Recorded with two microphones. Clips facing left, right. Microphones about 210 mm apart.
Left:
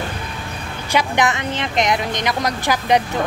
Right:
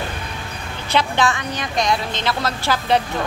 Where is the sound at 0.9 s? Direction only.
15° left (ahead or behind).